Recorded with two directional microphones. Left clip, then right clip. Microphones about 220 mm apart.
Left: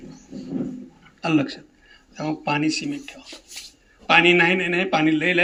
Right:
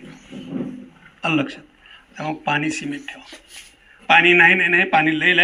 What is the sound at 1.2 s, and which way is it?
Speech, 65° left (ahead or behind).